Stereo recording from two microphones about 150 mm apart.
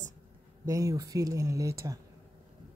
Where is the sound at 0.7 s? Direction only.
20° right (ahead or behind).